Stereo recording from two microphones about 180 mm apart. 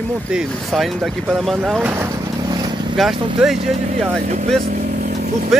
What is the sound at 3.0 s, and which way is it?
Speech, centre (ahead or behind).